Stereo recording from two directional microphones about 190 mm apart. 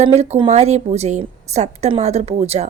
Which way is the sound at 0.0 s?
35° right (ahead or behind).